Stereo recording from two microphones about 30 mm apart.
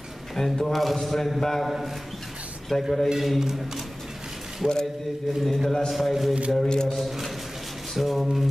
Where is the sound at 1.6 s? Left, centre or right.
Centre.